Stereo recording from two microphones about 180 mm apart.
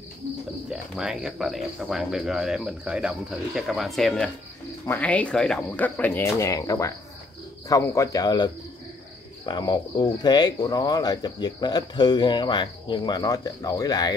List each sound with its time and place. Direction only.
0.7 s speech: 5° right (ahead or behind); by 8.5 s 20° left (ahead or behind)
9.5 s speech: 25° left (ahead or behind)